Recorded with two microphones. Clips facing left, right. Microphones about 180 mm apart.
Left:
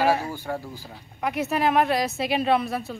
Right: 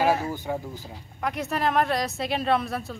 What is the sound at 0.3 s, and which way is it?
Speech, 20° right (ahead or behind).